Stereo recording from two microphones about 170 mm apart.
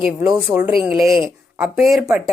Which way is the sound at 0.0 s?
5° right (ahead or behind).